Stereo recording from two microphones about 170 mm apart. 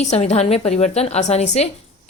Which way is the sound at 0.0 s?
40° left (ahead or behind).